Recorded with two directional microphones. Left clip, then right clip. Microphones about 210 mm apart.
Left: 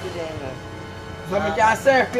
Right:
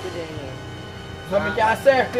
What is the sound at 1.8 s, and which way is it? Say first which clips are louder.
Speech: even; 20° right (ahead or behind).